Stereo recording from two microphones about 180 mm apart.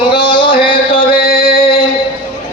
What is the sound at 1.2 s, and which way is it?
Music, 55° left (ahead or behind).